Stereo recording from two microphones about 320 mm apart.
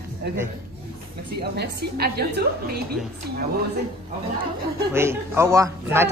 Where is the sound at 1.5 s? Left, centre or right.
Right.